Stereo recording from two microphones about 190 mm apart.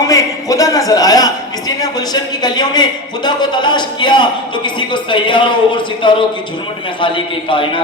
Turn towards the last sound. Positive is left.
turn(degrees=25)  # may be behind; listen again after turning